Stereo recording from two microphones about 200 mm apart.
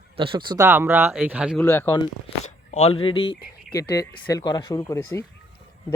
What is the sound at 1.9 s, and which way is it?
Speech, 25° left (ahead or behind).